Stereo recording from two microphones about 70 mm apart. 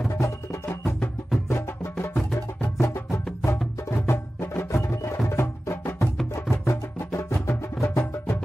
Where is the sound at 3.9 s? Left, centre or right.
Left.